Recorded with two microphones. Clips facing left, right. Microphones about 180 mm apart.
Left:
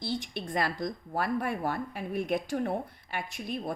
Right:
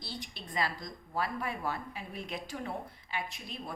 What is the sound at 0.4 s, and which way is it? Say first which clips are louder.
Speech: left 3 dB; 55° left (ahead or behind).